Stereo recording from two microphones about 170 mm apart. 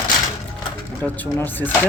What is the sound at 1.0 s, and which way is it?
Speech, 10° left (ahead or behind).